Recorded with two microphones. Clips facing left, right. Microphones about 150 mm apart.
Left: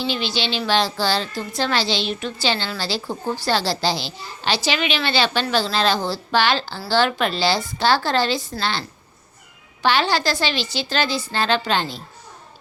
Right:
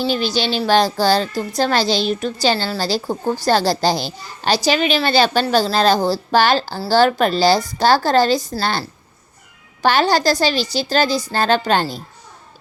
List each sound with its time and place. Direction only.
0.0 s a child's voice: 40° right (ahead or behind)